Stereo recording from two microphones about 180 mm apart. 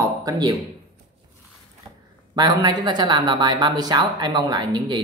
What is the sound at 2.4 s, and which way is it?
Speech, 25° right (ahead or behind).